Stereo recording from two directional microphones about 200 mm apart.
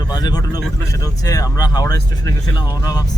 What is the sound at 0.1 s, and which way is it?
Speech, 20° left (ahead or behind).